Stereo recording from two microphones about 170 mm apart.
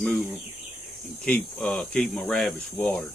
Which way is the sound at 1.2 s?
5° left (ahead or behind).